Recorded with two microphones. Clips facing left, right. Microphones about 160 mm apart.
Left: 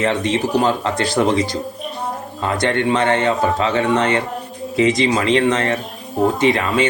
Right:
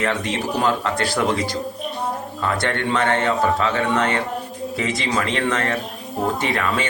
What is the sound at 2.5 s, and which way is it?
A man's voice, 20° left (ahead or behind).